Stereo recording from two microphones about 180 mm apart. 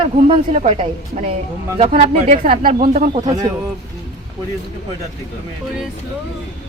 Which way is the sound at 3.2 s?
20° right (ahead or behind).